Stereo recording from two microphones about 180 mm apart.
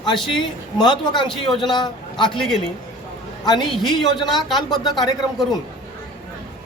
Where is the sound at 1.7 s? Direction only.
25° left (ahead or behind).